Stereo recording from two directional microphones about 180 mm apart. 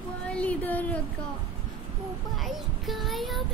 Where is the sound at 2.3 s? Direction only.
Centre (ahead or behind).